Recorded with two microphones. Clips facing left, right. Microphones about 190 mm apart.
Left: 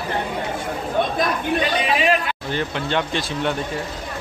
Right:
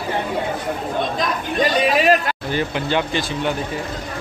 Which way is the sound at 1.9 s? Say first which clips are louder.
Right 2 dB; 40° right (ahead or behind).